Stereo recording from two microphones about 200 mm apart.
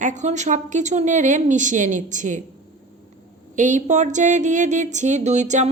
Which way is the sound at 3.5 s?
40° right (ahead or behind).